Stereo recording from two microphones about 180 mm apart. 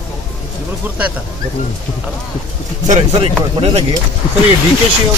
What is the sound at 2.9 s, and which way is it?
Speech, 35° right (ahead or behind).